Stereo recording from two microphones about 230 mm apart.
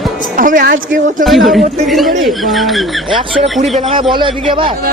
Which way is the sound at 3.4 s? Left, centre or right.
Right.